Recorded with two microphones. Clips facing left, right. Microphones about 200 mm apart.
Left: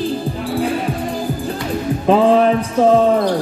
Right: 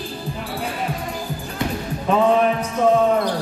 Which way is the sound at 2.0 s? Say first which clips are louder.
Left 4 dB; 30° left (ahead or behind).